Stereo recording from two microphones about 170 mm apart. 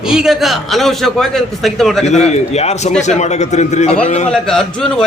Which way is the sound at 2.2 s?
40° left (ahead or behind).